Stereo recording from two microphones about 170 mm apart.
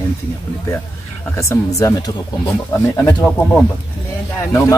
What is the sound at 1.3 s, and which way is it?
Speech, 15° left (ahead or behind).